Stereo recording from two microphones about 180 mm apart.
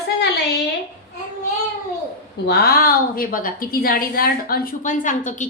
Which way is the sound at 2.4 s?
60° left (ahead or behind).